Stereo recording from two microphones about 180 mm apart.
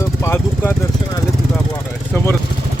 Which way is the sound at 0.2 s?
15° left (ahead or behind).